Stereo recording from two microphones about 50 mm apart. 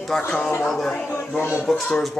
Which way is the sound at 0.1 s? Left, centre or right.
Centre.